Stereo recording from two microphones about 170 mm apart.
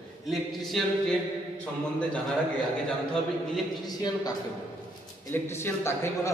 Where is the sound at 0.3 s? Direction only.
Centre (ahead or behind).